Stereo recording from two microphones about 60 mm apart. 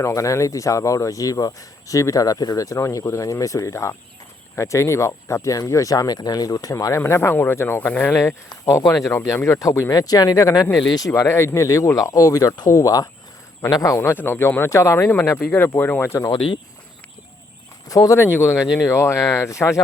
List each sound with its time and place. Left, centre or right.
0.0 s speech: left
7.2 s speech: left
8.6 s speech: left
9.9 s speech: left
11.2 s speech: left
14.0 s speech: left
14.6 s speech: left
14.9 s speech: left
17.8 s speech: left
18.3 s speech: left